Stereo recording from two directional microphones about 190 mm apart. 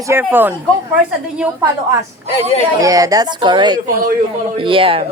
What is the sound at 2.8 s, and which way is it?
Speech, 20° right (ahead or behind).